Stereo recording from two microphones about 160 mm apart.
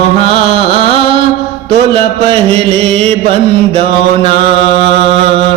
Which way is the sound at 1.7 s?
40° right (ahead or behind).